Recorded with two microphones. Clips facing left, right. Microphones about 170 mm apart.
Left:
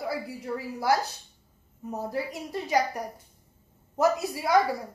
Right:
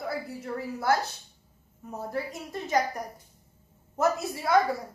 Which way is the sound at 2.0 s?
15° left (ahead or behind).